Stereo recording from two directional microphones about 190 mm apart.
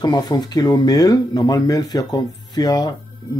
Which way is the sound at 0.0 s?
20° left (ahead or behind).